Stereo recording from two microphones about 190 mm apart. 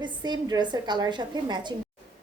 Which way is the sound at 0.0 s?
20° right (ahead or behind).